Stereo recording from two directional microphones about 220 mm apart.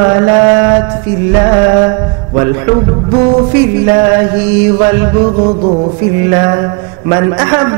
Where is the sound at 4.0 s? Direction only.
15° right (ahead or behind).